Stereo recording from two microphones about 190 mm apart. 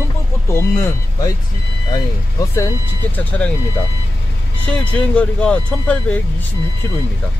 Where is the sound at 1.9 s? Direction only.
15° left (ahead or behind).